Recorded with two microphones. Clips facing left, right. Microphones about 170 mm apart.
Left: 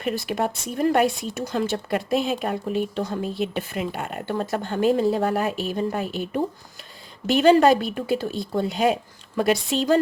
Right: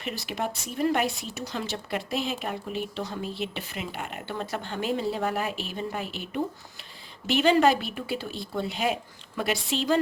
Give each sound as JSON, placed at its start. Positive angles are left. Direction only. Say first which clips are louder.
{"t": 0.0, "sound": "speech", "louder": "left 7 dB", "side_deg": 50}